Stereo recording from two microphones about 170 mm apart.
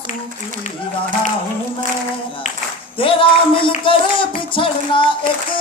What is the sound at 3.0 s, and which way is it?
Music, 30° left (ahead or behind).